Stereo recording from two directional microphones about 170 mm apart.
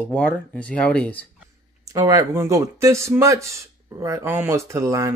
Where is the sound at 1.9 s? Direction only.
20° right (ahead or behind).